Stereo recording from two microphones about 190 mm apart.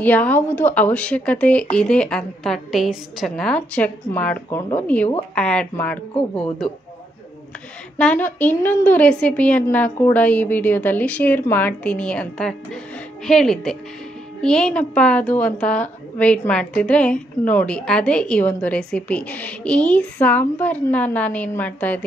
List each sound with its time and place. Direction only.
0.0 s a woman's voice: 10° left (ahead or behind)
8.0 s a woman's voice: 10° left (ahead or behind)